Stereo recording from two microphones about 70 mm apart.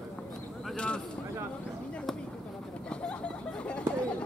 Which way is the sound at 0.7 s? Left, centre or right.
Centre.